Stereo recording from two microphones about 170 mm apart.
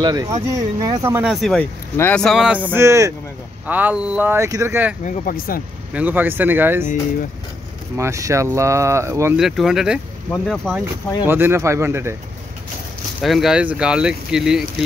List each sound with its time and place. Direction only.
0.0 s speech: 20° right (ahead or behind)
1.3 s speech: centre (ahead or behind)
2.7 s speech: 15° right (ahead or behind)
5.0 s speech: 55° left (ahead or behind)
5.9 s speech: 10° right (ahead or behind)
8.0 s speech: 15° right (ahead or behind)
9.4 s speech: centre (ahead or behind)
11.2 s speech: 15° right (ahead or behind)
13.2 s speech: centre (ahead or behind)